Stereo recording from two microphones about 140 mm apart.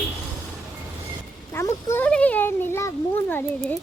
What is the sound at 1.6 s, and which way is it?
A child's voice, 15° left (ahead or behind).